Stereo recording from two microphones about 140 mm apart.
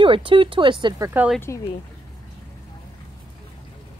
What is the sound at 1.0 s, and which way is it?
Speech, 15° right (ahead or behind).